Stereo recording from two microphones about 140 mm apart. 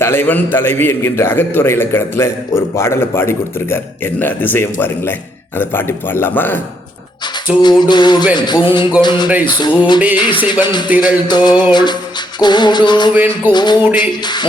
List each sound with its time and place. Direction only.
0.0 s a man's voice: 15° left (ahead or behind)
7.6 s music: 30° left (ahead or behind)